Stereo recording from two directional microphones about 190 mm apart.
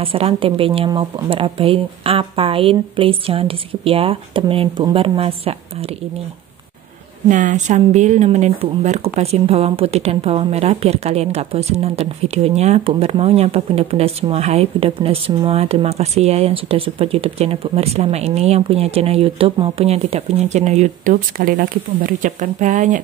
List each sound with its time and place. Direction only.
0.0 s speech: 30° right (ahead or behind)
7.2 s speech: 40° right (ahead or behind)